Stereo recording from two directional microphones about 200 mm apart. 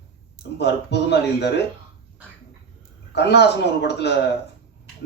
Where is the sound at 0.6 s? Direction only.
55° left (ahead or behind).